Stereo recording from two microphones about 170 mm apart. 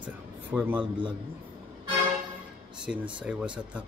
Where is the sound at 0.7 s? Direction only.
30° right (ahead or behind).